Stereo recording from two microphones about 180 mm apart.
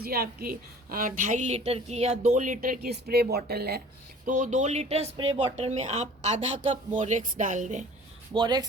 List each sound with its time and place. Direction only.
0.0 s a woman's voice: 60° right (ahead or behind)
4.3 s speech: 45° right (ahead or behind)
8.3 s speech: 25° right (ahead or behind)